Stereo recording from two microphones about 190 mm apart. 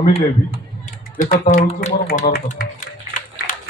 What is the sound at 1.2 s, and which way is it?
Speech, 40° left (ahead or behind).